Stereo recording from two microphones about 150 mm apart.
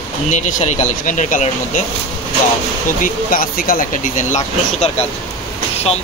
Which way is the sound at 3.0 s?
70° left (ahead or behind).